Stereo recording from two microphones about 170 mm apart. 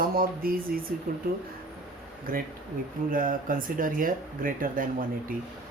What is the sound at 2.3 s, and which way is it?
Speech, 55° right (ahead or behind).